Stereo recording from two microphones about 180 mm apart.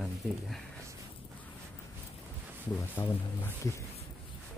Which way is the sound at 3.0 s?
20° left (ahead or behind).